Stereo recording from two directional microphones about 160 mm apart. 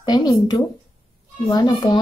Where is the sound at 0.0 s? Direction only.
25° left (ahead or behind).